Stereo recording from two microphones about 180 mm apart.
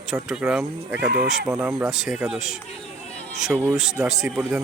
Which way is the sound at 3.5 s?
15° right (ahead or behind).